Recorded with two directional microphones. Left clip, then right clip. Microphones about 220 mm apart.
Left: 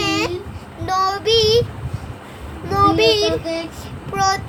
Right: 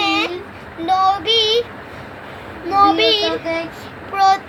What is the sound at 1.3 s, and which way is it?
Child singing, 60° left (ahead or behind).